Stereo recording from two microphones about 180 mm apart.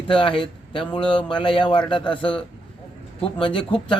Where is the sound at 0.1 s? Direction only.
30° left (ahead or behind).